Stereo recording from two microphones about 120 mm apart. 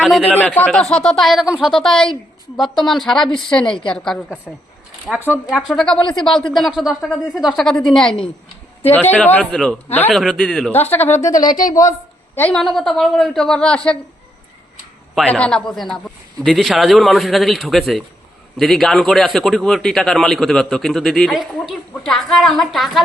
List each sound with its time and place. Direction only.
0.0 s speech: centre (ahead or behind)
0.3 s a man's voice: 10° left (ahead or behind)
5.5 s a man's voice: centre (ahead or behind)
10.7 s a man's voice: 15° left (ahead or behind)
11.3 s a woman's voice: 35° left (ahead or behind); by 12.5 s 15° left (ahead or behind)
12.5 s a man's voice: centre (ahead or behind)
15.3 s a man's voice: 10° left (ahead or behind)